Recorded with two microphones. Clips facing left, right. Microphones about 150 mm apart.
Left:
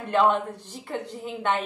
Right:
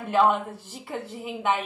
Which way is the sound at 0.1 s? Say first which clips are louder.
Even; 5° right (ahead or behind).